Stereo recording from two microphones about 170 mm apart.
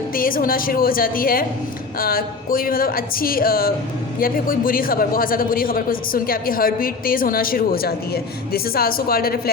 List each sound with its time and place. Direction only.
0.1 s a woman's voice: 55° left (ahead or behind)